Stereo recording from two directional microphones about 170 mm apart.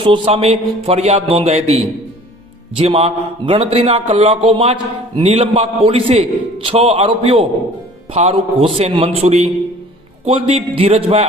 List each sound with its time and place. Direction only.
0.0 s speech: 30° right (ahead or behind)